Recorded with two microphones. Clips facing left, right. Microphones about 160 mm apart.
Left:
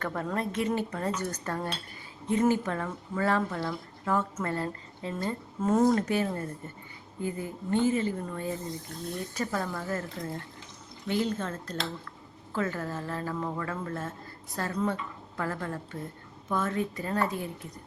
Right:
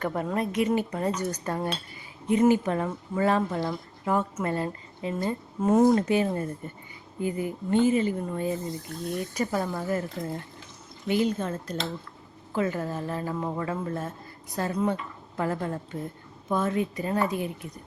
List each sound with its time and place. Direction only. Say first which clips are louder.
0.0 s a woman's voice: right 3 dB; 15° right (ahead or behind)